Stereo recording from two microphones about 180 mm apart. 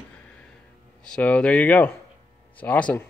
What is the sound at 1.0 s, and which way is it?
Speech, 5° left (ahead or behind).